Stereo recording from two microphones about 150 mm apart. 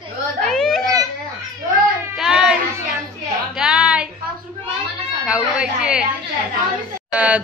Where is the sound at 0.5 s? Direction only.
5° left (ahead or behind).